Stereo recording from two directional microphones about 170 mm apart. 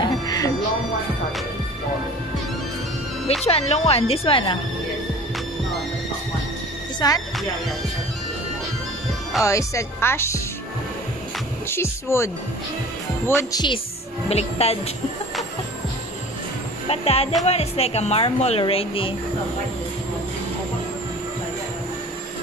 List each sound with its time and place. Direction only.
0.0 s music: 25° left (ahead or behind)
3.4 s speech: 40° left (ahead or behind)
7.0 s speech: 25° left (ahead or behind)
9.4 s speech: 20° left (ahead or behind)
11.7 s speech: 15° left (ahead or behind)
13.3 s speech: 20° left (ahead or behind)
14.3 s speech: 35° left (ahead or behind)
16.9 s speech: 35° left (ahead or behind)